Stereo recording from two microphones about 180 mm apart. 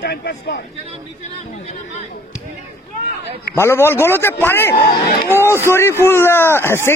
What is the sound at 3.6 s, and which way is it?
Speech, 15° left (ahead or behind).